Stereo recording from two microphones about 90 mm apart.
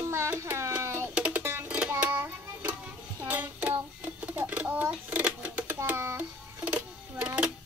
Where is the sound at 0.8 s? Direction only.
30° right (ahead or behind).